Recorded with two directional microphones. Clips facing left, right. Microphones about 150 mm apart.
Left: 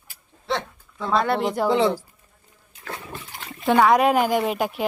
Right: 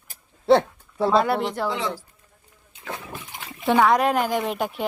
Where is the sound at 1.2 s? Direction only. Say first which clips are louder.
Left 1 dB; centre (ahead or behind).